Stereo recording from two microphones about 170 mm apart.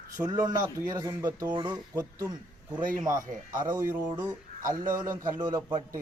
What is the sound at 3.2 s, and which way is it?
Speech, 50° right (ahead or behind).